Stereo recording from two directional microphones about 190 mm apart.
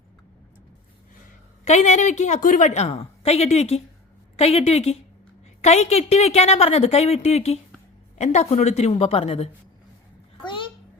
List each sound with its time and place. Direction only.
1.6 s a woman's voice: 40° left (ahead or behind)